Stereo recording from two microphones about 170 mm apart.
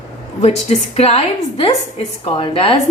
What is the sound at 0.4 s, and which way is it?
A woman's voice, 40° left (ahead or behind).